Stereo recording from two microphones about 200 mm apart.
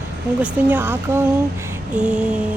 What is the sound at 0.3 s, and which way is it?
Speech, 10° right (ahead or behind).